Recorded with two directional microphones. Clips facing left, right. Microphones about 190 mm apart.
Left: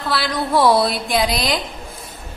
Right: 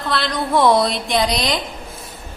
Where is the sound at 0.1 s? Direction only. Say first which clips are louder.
Even; 5° left (ahead or behind).